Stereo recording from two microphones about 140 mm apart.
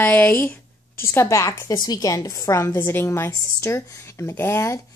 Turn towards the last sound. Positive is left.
turn(degrees=20)  # may be behind; listen again after turning